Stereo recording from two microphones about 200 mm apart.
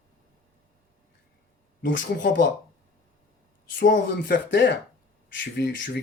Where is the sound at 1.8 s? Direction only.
65° left (ahead or behind).